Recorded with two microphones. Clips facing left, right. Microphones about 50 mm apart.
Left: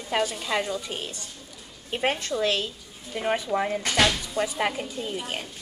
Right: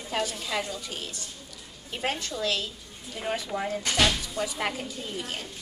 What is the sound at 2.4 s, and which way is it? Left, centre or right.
A woman's voice, left.